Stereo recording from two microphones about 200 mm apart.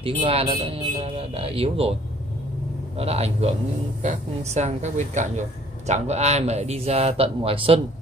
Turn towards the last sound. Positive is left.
turn(degrees=-30)  # may be behind; listen again after turning